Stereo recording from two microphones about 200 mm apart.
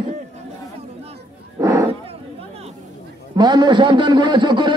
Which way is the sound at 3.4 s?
20° right (ahead or behind).